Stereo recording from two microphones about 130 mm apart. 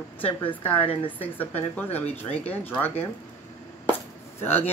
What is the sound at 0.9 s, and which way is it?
Speech, 45° left (ahead or behind).